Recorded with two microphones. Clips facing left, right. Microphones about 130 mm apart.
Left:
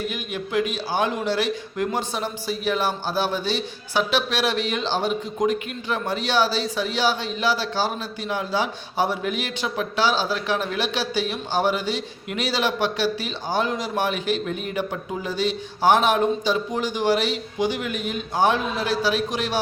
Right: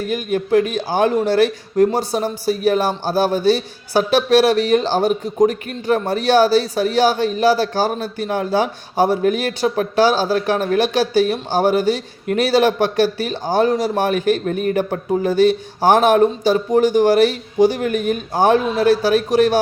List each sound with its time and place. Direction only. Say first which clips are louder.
0.1 s a man's voice: right 10 dB; 45° right (ahead or behind)